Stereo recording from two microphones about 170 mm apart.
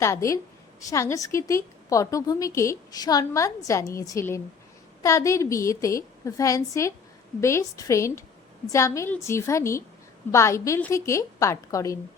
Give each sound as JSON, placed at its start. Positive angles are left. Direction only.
{"t": 0.0, "sound": "a woman's voice", "side_deg": 15}